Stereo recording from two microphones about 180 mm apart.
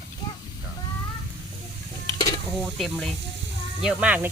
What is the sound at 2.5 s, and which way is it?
Speech, centre (ahead or behind).